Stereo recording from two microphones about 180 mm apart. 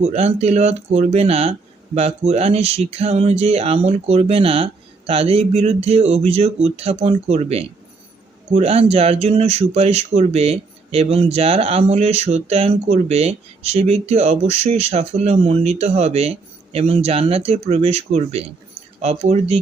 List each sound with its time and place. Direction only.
0.0 s speech: 35° right (ahead or behind)